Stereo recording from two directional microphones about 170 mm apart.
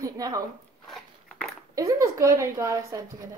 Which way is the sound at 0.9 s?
Centre (ahead or behind).